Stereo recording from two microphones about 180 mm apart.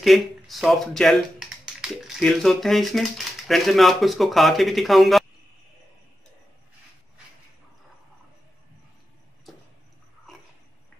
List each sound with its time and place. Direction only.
0.0 s speech: centre (ahead or behind)